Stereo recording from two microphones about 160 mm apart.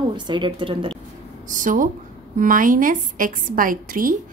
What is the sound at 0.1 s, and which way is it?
Speech, 30° right (ahead or behind).